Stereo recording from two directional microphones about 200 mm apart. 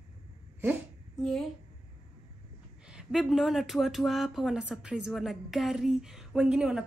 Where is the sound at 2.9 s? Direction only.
Centre (ahead or behind).